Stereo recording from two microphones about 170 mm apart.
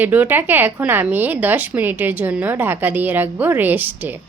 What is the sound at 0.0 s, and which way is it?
A woman's voice, 10° right (ahead or behind).